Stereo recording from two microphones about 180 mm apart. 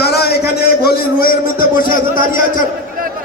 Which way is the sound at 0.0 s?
60° left (ahead or behind).